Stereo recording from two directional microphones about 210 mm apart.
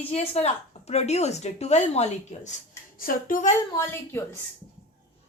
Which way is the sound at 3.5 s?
10° left (ahead or behind).